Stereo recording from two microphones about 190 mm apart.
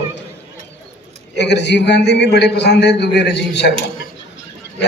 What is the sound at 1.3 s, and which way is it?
A man's voice, 65° left (ahead or behind).